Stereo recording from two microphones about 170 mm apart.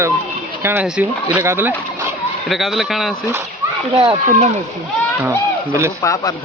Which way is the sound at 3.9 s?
30° right (ahead or behind).